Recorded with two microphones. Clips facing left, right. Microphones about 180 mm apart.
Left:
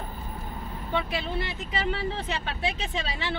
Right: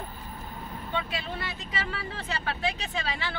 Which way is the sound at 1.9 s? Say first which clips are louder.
Left 6 dB; 25° left (ahead or behind).